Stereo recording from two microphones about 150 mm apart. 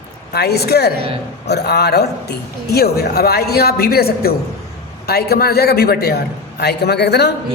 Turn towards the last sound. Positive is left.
turn(degrees=90)